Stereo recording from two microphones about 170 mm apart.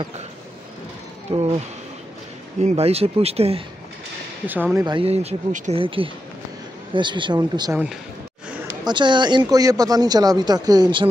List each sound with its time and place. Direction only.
1.3 s speech: 30° right (ahead or behind)
2.6 s speech: 40° right (ahead or behind)
4.5 s speech: 10° right (ahead or behind)
4.8 s speech: 30° right (ahead or behind)
7.7 s speech: 5° right (ahead or behind)
8.8 s speech: 25° right (ahead or behind)